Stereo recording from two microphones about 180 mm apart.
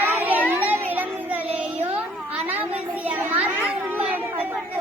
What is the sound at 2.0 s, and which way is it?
Children playing, 10° right (ahead or behind).